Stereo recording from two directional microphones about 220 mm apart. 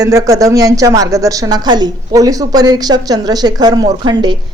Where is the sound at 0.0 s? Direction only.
15° right (ahead or behind).